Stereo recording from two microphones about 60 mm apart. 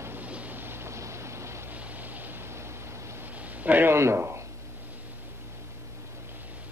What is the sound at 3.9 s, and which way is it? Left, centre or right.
Speech, right.